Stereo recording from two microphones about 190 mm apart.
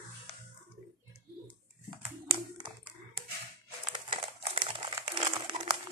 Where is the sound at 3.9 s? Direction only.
25° right (ahead or behind).